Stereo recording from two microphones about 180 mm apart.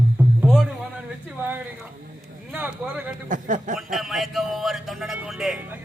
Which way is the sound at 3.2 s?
45° right (ahead or behind).